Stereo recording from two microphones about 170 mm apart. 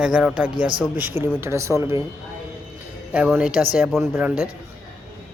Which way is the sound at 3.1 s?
10° right (ahead or behind).